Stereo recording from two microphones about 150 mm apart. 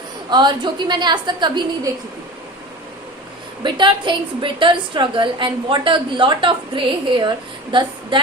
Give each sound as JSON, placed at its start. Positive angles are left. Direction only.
{"t": 0.3, "sound": "a woman's voice", "side_deg": -30}
{"t": 3.6, "sound": "a woman's voice", "side_deg": -35}